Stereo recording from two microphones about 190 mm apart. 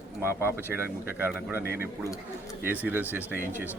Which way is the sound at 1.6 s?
50° left (ahead or behind).